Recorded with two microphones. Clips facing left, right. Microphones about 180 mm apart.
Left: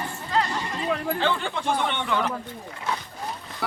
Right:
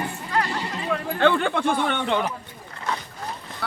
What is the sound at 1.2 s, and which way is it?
Speech, 55° right (ahead or behind).